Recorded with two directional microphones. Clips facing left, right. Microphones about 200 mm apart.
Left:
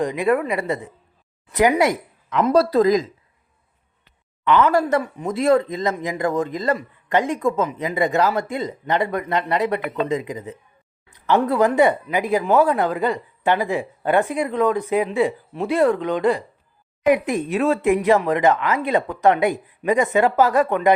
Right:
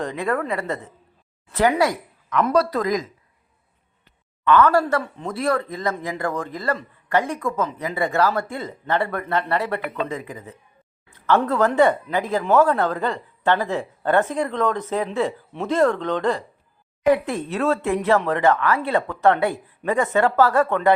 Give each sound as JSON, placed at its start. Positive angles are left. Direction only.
{"t": 0.0, "sound": "speech", "side_deg": 15}
{"t": 4.4, "sound": "speech", "side_deg": 20}